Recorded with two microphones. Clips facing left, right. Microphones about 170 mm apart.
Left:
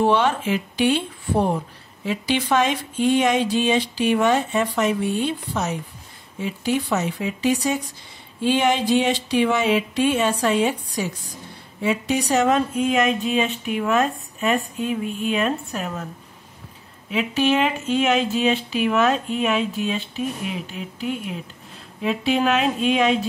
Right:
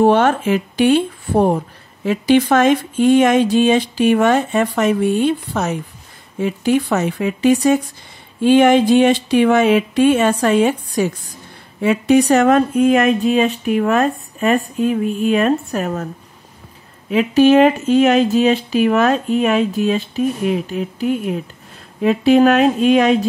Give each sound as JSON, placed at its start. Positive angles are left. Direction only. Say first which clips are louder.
{"t": 0.0, "sound": "speech", "louder": "right 6 dB", "side_deg": -50}
{"t": 17.1, "sound": "speech", "louder": "right 9 dB", "side_deg": -45}